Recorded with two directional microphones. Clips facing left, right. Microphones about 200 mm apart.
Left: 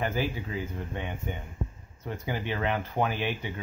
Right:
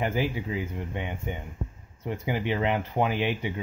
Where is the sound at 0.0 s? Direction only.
15° right (ahead or behind).